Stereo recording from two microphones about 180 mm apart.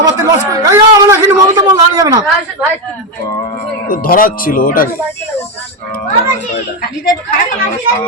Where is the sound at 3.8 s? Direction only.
50° left (ahead or behind).